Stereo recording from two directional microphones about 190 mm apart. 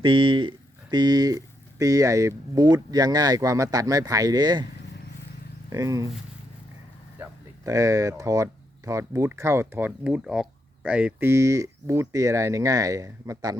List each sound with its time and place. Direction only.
0.0 s speech: 25° right (ahead or behind)
5.7 s speech: 15° right (ahead or behind)
7.2 s speech: 15° right (ahead or behind)